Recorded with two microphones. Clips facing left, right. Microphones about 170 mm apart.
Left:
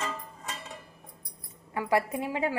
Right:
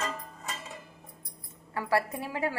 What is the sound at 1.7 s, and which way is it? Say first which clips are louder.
Speech: left 2 dB; 20° left (ahead or behind).